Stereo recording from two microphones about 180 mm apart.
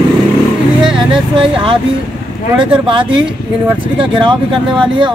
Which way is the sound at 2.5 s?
25° right (ahead or behind).